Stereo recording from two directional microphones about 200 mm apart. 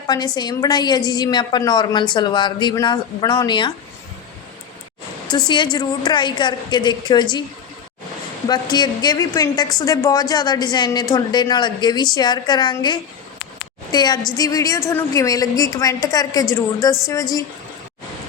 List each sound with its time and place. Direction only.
0.3 s a woman's voice: 20° left (ahead or behind)
5.5 s a woman's voice: 20° left (ahead or behind)
8.4 s a woman's voice: 20° left (ahead or behind)